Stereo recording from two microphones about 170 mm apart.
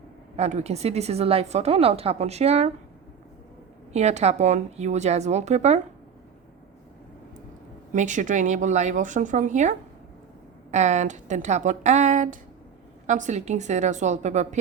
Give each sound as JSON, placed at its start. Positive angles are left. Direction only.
{"t": 0.3, "sound": "a woman's voice", "side_deg": -40}
{"t": 3.9, "sound": "a woman's voice", "side_deg": -40}
{"t": 7.9, "sound": "speech", "side_deg": -45}